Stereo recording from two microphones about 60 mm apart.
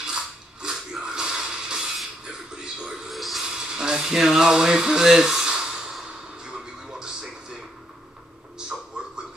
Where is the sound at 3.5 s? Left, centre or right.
Centre.